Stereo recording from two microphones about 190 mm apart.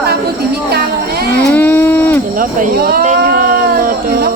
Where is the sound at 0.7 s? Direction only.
55° right (ahead or behind).